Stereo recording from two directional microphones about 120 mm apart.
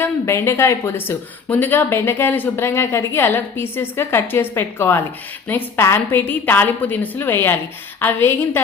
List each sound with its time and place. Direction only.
0.0 s a woman's voice: 20° left (ahead or behind)